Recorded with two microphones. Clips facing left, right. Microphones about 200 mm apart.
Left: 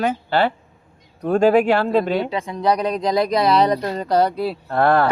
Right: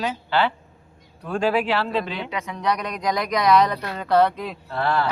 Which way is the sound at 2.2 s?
35° left (ahead or behind).